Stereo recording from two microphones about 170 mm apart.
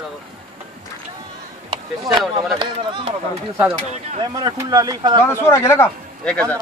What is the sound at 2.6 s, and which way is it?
Speech, 30° right (ahead or behind).